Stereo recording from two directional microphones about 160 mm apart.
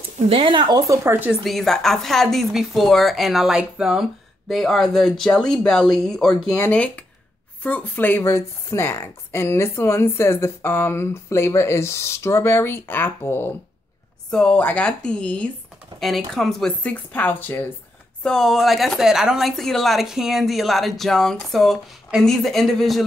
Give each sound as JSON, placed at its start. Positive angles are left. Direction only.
{"t": 0.3, "sound": "speech", "side_deg": -30}
{"t": 1.4, "sound": "a woman's voice", "side_deg": 0}